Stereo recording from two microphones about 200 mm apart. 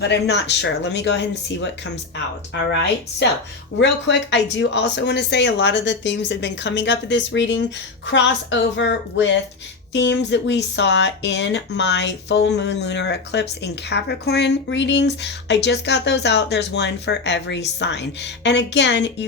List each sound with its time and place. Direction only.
0.0 s speech: 60° left (ahead or behind)
3.8 s speech: 65° left (ahead or behind)